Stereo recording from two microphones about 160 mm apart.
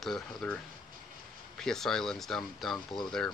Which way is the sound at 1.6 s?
5° left (ahead or behind).